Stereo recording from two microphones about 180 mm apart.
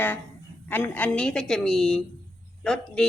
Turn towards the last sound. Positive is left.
turn(degrees=5)  # may be behind; listen again after turning